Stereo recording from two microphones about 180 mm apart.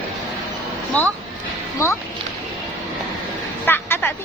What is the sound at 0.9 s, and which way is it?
Speech, 10° left (ahead or behind).